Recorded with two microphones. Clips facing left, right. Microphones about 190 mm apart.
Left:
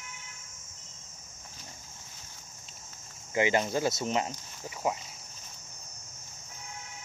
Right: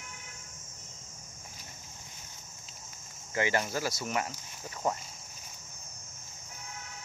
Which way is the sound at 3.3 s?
20° left (ahead or behind).